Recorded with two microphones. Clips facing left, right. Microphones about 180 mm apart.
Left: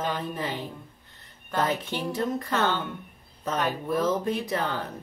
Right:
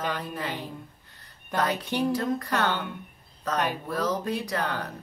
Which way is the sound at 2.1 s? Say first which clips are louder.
Right 1 dB; 25° left (ahead or behind).